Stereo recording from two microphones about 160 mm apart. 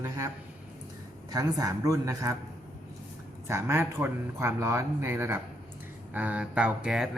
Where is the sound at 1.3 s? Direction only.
20° right (ahead or behind).